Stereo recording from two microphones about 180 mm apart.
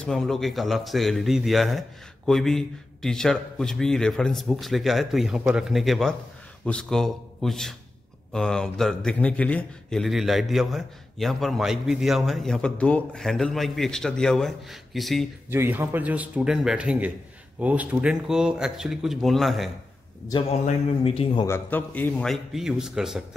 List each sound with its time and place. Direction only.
0.0 s a man's voice: centre (ahead or behind)
15.5 s a man's voice: 15° right (ahead or behind)
20.2 s a man's voice: 25° left (ahead or behind)
21.5 s a man's voice: 10° left (ahead or behind)